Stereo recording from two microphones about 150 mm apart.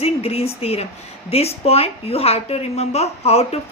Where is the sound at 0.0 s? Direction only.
40° left (ahead or behind).